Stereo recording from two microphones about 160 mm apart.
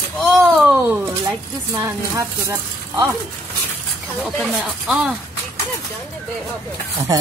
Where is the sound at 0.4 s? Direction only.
10° right (ahead or behind).